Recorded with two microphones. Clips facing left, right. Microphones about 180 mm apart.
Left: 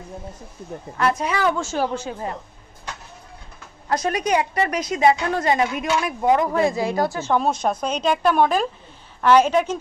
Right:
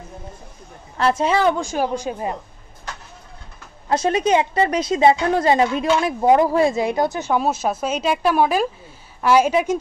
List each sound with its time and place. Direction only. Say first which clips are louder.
0.9 s a woman's voice: right 4 dB; 30° right (ahead or behind)
1.6 s a woman's voice: right 2 dB; 15° right (ahead or behind)
3.9 s a woman's voice: right 3 dB; 25° right (ahead or behind); by 9.8 s 10° right (ahead or behind)